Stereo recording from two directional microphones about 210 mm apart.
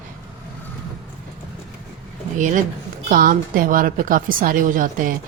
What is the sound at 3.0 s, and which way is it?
A woman's voice, 40° right (ahead or behind).